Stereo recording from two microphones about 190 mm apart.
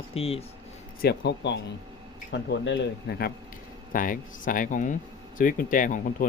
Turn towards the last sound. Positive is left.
turn(degrees=45)  # may be behind; listen again after turning